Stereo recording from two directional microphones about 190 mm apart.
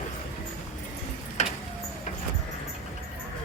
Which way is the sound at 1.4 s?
35° left (ahead or behind).